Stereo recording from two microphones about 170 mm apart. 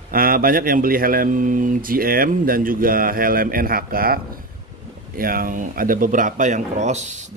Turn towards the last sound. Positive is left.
turn(degrees=-45)  # may be behind; listen again after turning